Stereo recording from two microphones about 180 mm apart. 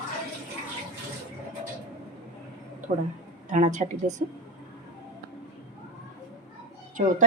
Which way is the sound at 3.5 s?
40° right (ahead or behind).